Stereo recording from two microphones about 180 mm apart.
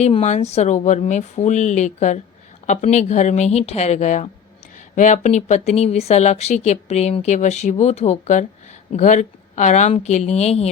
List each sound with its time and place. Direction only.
0.0 s speech: 35° left (ahead or behind)